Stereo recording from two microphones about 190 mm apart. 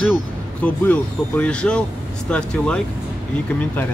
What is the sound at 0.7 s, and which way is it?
Speech, 10° left (ahead or behind).